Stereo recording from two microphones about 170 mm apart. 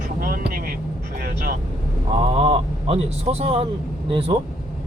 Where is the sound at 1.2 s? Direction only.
55° right (ahead or behind).